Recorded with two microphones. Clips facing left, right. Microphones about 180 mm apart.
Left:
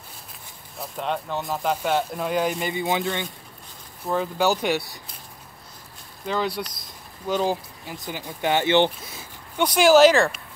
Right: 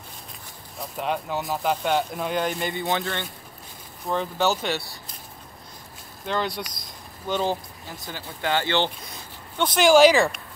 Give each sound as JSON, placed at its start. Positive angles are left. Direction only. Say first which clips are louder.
{"t": 0.7, "sound": "speech", "louder": "even", "side_deg": -5}
{"t": 4.1, "sound": "speech", "louder": "left 2 dB", "side_deg": 5}
{"t": 6.2, "sound": "speech", "louder": "left 1 dB", "side_deg": 5}
{"t": 9.0, "sound": "speech", "louder": "even", "side_deg": 5}